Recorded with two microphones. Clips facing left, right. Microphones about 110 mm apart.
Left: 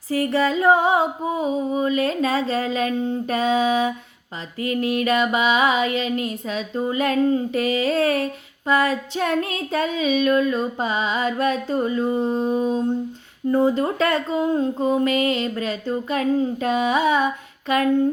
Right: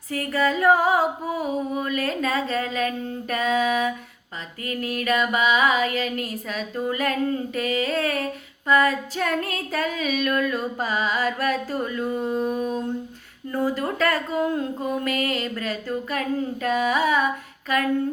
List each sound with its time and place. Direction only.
0.1 s music: 30° left (ahead or behind)
7.0 s female singing: 25° left (ahead or behind)
9.9 s music: 25° left (ahead or behind)